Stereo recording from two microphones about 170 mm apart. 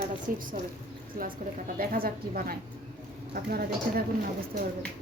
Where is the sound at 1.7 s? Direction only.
60° right (ahead or behind).